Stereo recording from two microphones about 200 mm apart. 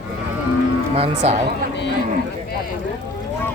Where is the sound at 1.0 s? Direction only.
30° right (ahead or behind).